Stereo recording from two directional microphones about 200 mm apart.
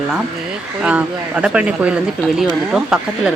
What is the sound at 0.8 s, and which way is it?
Speech, 5° right (ahead or behind).